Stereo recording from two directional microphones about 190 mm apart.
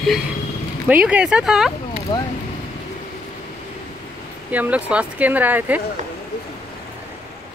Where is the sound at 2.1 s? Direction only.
20° left (ahead or behind).